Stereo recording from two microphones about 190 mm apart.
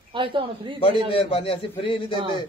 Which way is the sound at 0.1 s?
25° right (ahead or behind).